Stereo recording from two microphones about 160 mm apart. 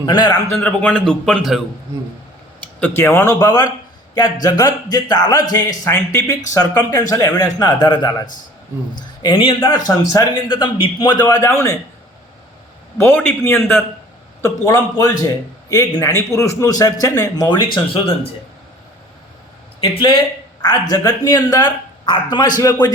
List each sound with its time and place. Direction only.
0.0 s speech: 25° left (ahead or behind)
0.4 s a man's voice: 10° left (ahead or behind)
2.8 s a man's voice: 15° left (ahead or behind)
13.0 s a man's voice: 15° left (ahead or behind); by 18.3 s 35° left (ahead or behind)
19.8 s speech: 30° left (ahead or behind)